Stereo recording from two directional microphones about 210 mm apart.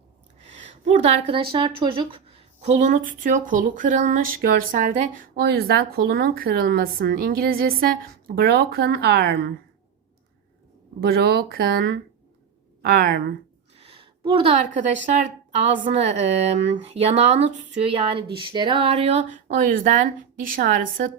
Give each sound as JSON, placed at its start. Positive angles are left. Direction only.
{"t": 0.6, "sound": "a woman's voice", "side_deg": -35}
{"t": 11.0, "sound": "speech", "side_deg": -50}
{"t": 13.7, "sound": "a sound", "side_deg": -25}
{"t": 15.8, "sound": "a woman's voice", "side_deg": -30}